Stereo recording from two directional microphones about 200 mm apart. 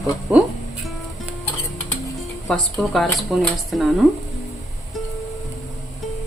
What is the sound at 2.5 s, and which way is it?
A woman's voice, centre (ahead or behind).